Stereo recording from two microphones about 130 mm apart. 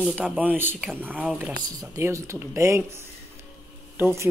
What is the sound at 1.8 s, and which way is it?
Speech, 25° right (ahead or behind).